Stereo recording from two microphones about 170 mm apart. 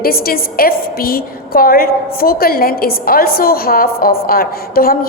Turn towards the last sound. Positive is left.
turn(degrees=60)  # may be behind; listen again after turning